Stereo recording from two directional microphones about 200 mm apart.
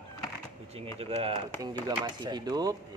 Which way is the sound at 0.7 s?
30° right (ahead or behind).